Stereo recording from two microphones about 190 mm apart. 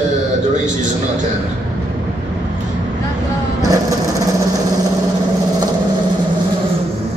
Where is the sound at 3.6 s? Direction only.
20° right (ahead or behind).